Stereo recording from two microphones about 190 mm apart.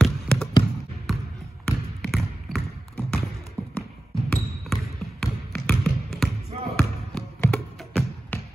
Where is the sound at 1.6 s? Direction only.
Centre (ahead or behind).